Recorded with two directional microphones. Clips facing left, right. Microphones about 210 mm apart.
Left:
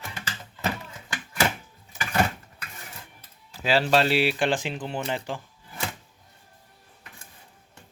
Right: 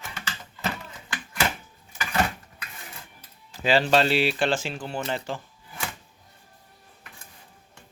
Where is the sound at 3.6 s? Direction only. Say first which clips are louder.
Right 1 dB; 5° left (ahead or behind).